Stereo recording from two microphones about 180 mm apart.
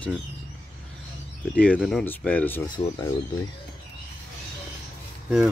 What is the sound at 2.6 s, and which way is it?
Speech, 25° left (ahead or behind).